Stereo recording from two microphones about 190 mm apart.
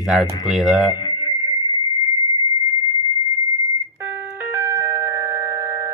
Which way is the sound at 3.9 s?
10° right (ahead or behind).